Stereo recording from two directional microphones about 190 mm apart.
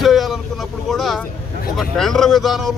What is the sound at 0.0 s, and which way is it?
Vehicle, centre (ahead or behind).